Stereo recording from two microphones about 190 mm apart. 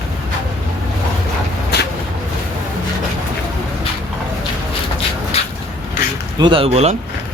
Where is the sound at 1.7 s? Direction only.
60° left (ahead or behind).